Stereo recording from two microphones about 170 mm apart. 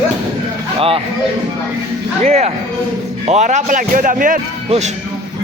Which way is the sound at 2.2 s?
40° right (ahead or behind).